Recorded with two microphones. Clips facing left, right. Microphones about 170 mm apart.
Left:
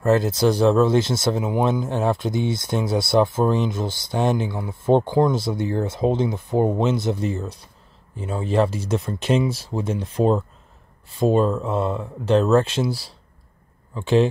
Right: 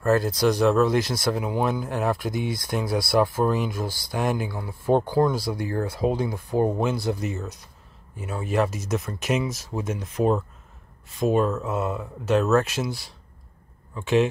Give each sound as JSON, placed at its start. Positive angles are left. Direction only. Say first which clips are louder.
{"t": 0.0, "sound": "speech", "louder": "left 3 dB", "side_deg": 20}